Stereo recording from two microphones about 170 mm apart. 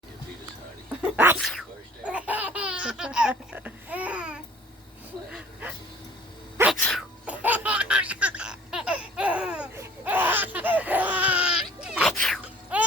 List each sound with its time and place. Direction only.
1.0 s sneeze: 10° right (ahead or behind)
1.4 s sneeze: centre (ahead or behind)
2.0 s laughter: 10° right (ahead or behind)
5.3 s a sound: 10° right (ahead or behind)
6.6 s sneeze: 15° right (ahead or behind)
7.3 s laughter: 10° right (ahead or behind)